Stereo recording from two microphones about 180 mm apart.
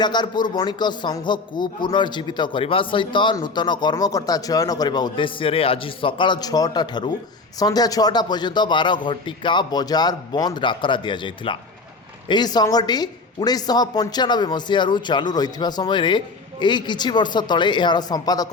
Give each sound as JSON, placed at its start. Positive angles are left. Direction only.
{"t": 0.0, "sound": "speech", "side_deg": 25}